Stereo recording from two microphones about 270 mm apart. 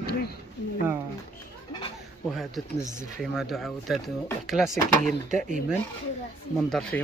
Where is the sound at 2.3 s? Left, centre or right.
Centre.